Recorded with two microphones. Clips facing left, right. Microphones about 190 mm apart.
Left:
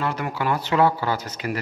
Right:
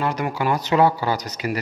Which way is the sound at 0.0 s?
15° right (ahead or behind).